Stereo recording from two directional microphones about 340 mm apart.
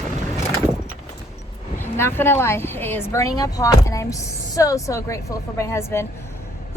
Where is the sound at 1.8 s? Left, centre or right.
Centre.